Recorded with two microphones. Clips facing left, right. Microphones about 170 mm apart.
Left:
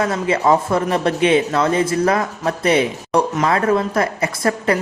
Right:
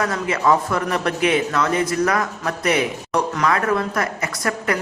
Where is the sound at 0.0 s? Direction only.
25° left (ahead or behind).